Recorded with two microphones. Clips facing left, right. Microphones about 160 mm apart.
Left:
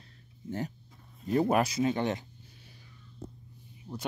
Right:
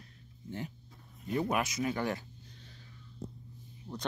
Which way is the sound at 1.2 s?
40° left (ahead or behind).